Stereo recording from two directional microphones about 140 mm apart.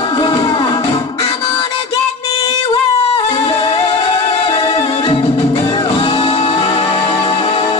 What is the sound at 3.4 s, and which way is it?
Music, 35° left (ahead or behind).